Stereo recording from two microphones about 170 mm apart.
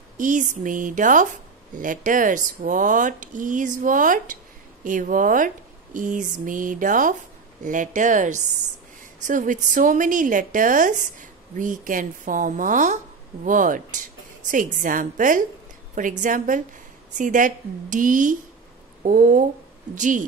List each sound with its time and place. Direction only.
0.2 s a woman's voice: 50° right (ahead or behind)